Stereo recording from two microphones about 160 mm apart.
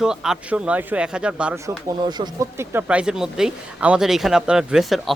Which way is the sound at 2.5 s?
15° right (ahead or behind).